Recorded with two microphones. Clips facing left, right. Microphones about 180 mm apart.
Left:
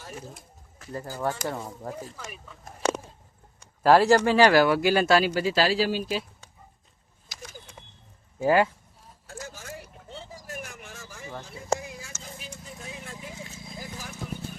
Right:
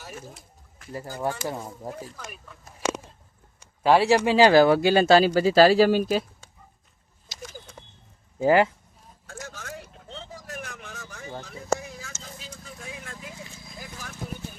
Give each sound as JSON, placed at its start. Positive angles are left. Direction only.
{"t": 0.9, "sound": "speech", "side_deg": -15}
{"t": 2.1, "sound": "speech", "side_deg": 5}
{"t": 3.8, "sound": "speech", "side_deg": 0}
{"t": 4.4, "sound": "speech", "side_deg": -25}
{"t": 8.4, "sound": "speech", "side_deg": -20}
{"t": 9.5, "sound": "vehicle", "side_deg": 10}
{"t": 11.7, "sound": "a sound", "side_deg": 15}
{"t": 12.2, "sound": "vehicle", "side_deg": 15}